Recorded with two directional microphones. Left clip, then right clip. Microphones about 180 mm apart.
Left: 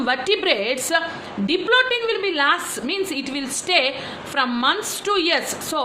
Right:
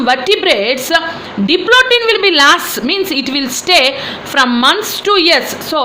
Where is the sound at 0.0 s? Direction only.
10° right (ahead or behind).